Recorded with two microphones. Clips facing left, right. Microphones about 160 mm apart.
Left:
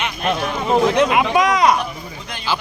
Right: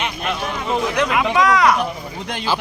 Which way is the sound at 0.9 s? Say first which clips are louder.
Left 2 dB; 20° left (ahead or behind).